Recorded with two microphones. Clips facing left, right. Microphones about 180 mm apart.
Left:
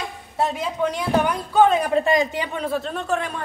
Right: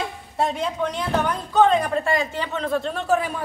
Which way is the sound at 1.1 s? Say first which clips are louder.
Left 1 dB; 10° left (ahead or behind).